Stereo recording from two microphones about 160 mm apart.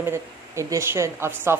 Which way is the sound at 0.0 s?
15° right (ahead or behind).